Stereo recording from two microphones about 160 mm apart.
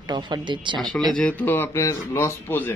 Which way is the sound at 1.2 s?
10° left (ahead or behind).